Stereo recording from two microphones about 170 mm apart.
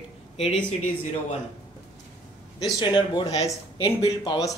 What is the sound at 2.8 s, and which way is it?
Speech, 25° left (ahead or behind).